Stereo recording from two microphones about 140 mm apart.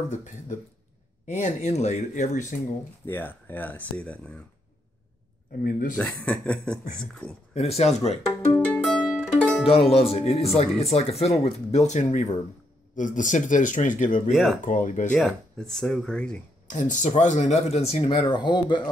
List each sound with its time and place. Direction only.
0.1 s speech: 60° left (ahead or behind)
3.1 s a man's voice: 15° left (ahead or behind)
5.6 s speech: 85° left
5.9 s a man's voice: 5° left (ahead or behind)
7.5 s speech: 50° left (ahead or behind)
8.6 s music: 10° left (ahead or behind)
9.7 s speech: 45° left (ahead or behind); by 14.3 s 65° left (ahead or behind)
14.3 s speech: centre (ahead or behind)
14.6 s speech: 70° left (ahead or behind)
15.1 s speech: 5° left (ahead or behind)
16.6 s speech: 65° left (ahead or behind); by 18.8 s 35° left (ahead or behind)